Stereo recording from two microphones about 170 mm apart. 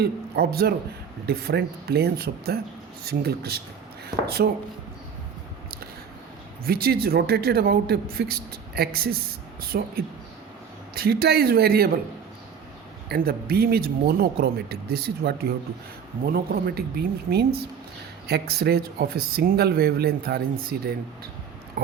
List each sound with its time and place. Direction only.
0.0 s a man's voice: 70° right (ahead or behind)
6.7 s speech: 65° right (ahead or behind)
13.1 s speech: 60° right (ahead or behind)